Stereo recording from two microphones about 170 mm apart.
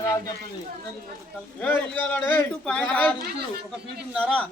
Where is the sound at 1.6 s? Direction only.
5° left (ahead or behind).